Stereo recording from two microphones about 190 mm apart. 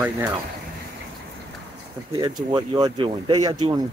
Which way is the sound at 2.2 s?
20° right (ahead or behind).